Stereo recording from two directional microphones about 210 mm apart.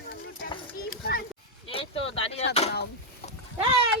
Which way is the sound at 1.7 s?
25° left (ahead or behind).